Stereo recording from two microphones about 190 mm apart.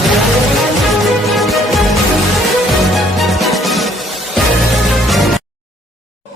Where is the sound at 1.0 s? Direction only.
Centre (ahead or behind).